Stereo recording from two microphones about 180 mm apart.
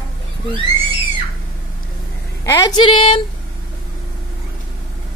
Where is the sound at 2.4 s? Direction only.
20° left (ahead or behind).